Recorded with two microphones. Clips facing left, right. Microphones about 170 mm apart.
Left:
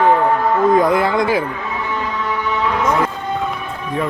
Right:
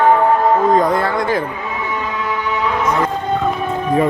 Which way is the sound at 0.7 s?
15° left (ahead or behind).